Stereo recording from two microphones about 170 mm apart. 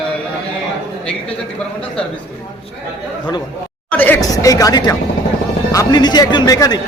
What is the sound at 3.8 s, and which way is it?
Speech, 10° left (ahead or behind).